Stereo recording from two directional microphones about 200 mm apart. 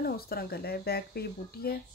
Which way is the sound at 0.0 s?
50° left (ahead or behind).